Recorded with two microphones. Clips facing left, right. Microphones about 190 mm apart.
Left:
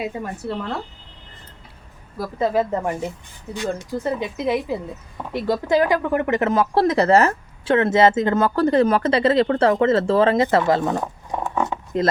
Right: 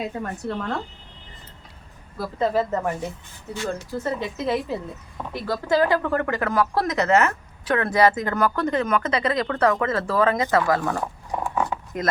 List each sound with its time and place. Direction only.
0.0 s speech: 10° left (ahead or behind)
2.1 s speech: 10° left (ahead or behind)
11.6 s a sound: 25° left (ahead or behind)